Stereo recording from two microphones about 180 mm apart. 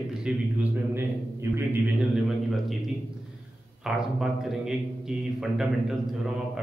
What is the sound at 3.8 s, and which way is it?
A man's voice, centre (ahead or behind).